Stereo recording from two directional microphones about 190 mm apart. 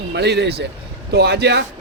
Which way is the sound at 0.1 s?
60° right (ahead or behind).